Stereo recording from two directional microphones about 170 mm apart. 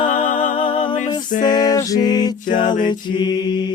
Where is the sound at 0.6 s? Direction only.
30° left (ahead or behind).